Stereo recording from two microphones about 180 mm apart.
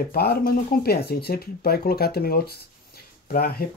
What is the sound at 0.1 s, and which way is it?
Speech, 60° left (ahead or behind).